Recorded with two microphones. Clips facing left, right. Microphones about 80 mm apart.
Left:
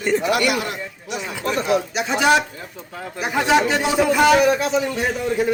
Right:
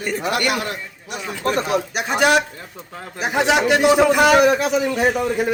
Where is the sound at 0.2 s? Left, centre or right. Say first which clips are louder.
Left 1 dB; right.